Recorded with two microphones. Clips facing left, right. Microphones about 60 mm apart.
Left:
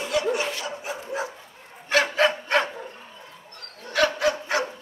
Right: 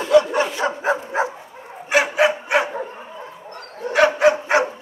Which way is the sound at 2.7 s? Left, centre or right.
Right.